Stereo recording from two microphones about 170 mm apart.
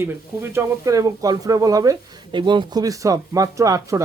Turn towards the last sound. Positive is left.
turn(degrees=-20)  # may be behind; listen again after turning